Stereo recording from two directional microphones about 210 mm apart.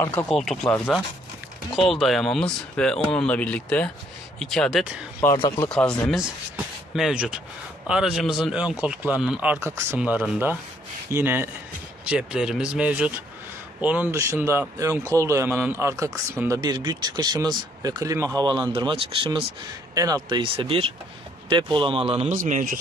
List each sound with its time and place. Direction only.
0.0 s speech: 10° left (ahead or behind)
0.3 s a man's voice: centre (ahead or behind); by 22.8 s 40° right (ahead or behind)